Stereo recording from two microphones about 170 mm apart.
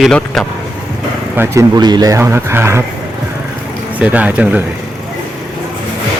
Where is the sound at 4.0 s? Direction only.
10° right (ahead or behind).